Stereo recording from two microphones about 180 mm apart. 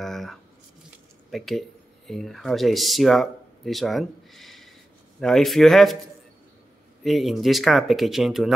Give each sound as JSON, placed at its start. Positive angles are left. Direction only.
{"t": 0.0, "sound": "squish", "side_deg": 0}
{"t": 1.3, "sound": "speech", "side_deg": 0}
{"t": 7.0, "sound": "speech", "side_deg": 0}